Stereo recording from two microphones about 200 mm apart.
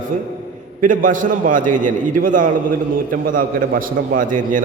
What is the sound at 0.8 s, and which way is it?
A man's voice, 40° right (ahead or behind).